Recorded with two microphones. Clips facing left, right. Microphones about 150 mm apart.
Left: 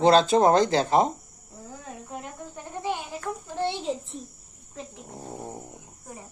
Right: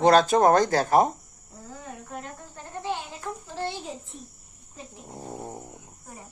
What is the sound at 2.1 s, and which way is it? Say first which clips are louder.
Insect: left 1 dB; 15° left (ahead or behind).